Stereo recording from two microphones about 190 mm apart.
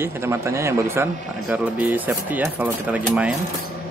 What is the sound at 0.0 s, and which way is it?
Speech, 15° right (ahead or behind).